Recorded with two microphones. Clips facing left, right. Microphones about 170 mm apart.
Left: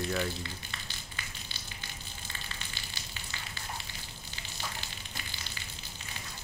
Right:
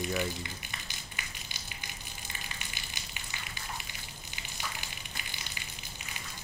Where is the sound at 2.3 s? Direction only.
15° right (ahead or behind).